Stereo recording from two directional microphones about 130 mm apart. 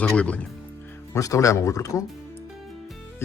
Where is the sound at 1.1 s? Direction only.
25° left (ahead or behind).